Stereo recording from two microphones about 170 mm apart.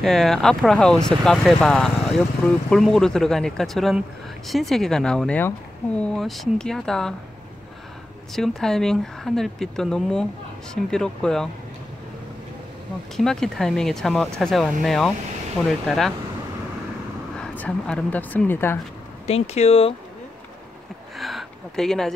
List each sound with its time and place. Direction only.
0.0 s speech: centre (ahead or behind)
8.3 s speech: centre (ahead or behind)
13.1 s speech: 5° left (ahead or behind)
17.4 s speech: 5° left (ahead or behind)
19.2 s speech: 40° left (ahead or behind)
21.2 s a sound: centre (ahead or behind)